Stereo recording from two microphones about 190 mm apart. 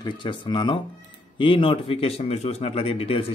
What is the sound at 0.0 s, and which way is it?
Speech, 25° left (ahead or behind).